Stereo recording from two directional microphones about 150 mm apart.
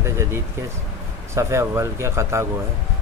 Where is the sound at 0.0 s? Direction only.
20° right (ahead or behind).